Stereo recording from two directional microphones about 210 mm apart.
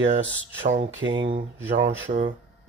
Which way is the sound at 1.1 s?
20° right (ahead or behind).